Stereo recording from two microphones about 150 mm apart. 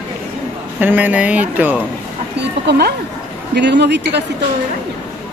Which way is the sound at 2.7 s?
90° right.